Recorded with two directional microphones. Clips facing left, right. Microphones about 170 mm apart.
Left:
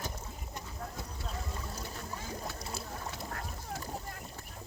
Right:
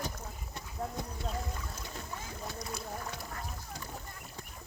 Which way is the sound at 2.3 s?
30° left (ahead or behind).